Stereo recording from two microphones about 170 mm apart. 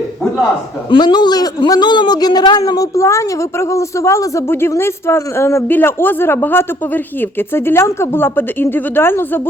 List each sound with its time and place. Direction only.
0.9 s a man's voice: 25° left (ahead or behind)